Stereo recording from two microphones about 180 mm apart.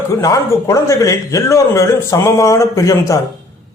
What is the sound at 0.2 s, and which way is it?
Speech, 20° left (ahead or behind).